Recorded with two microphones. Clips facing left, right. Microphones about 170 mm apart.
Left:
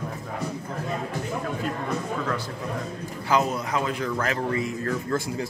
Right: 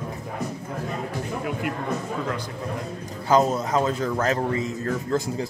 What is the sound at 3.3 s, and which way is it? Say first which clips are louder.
A man's voice: right 4 dB; 25° right (ahead or behind).